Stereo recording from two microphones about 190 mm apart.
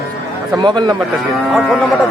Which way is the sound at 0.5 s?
25° right (ahead or behind).